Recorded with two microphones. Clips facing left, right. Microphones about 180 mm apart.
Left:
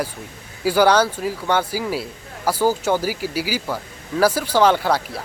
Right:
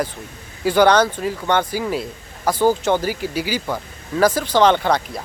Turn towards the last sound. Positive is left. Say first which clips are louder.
# right 1 dB
turn(degrees=5)  # may be behind; listen again after turning